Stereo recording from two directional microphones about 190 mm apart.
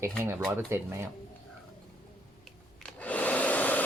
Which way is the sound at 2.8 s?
10° left (ahead or behind).